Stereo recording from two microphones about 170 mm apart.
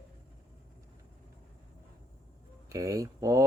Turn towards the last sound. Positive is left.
turn(degrees=-20)  # may be behind; listen again after turning